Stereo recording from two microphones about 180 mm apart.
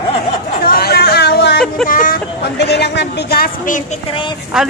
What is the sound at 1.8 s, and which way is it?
Speech, 50° left (ahead or behind).